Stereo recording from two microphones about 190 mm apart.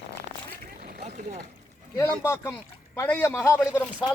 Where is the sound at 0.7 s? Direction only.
55° right (ahead or behind).